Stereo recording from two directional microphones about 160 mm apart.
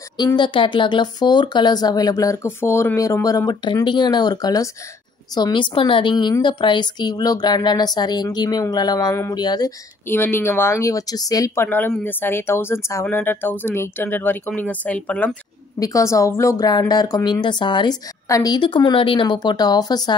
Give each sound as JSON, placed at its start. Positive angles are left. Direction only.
{"t": 0.4, "sound": "a woman's voice", "side_deg": 30}
{"t": 10.0, "sound": "speech", "side_deg": 15}
{"t": 15.8, "sound": "a woman's voice", "side_deg": 20}